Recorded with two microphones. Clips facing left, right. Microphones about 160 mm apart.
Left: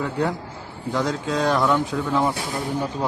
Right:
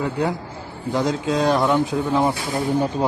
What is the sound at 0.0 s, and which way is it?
A man's voice, 10° right (ahead or behind).